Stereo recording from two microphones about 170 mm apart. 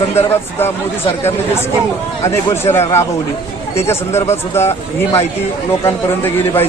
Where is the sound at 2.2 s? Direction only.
15° left (ahead or behind).